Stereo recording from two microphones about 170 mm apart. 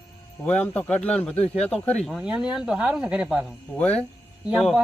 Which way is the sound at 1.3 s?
40° left (ahead or behind).